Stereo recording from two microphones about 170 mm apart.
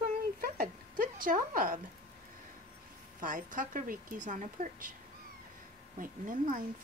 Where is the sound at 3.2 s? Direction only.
50° right (ahead or behind).